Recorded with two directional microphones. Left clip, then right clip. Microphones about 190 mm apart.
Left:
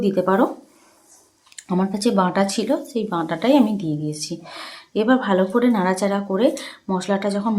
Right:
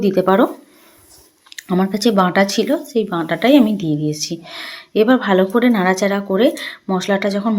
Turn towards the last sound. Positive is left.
turn(degrees=-15)  # may be behind; listen again after turning